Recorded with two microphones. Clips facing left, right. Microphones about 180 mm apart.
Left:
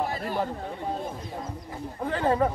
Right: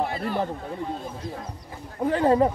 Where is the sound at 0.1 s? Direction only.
45° left (ahead or behind).